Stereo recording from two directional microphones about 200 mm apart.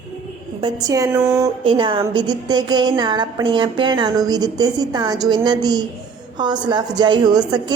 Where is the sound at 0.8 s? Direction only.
15° right (ahead or behind).